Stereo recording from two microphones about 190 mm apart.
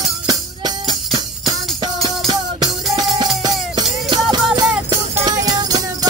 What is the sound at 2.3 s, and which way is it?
Music, 20° right (ahead or behind).